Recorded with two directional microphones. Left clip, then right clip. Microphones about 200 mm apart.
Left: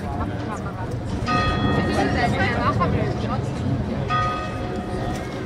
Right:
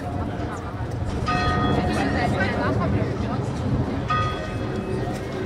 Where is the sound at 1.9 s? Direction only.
50° left (ahead or behind).